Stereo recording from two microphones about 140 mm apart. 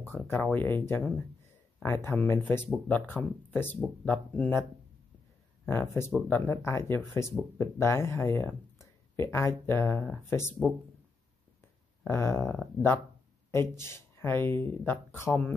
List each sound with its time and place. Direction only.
0.0 s speech: 15° left (ahead or behind)
5.7 s speech: 15° left (ahead or behind)
8.4 s a sound: 15° left (ahead or behind)
9.7 s speech: 15° left (ahead or behind)
12.0 s speech: 15° left (ahead or behind)